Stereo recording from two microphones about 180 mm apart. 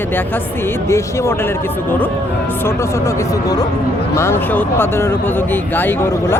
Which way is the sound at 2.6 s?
15° left (ahead or behind).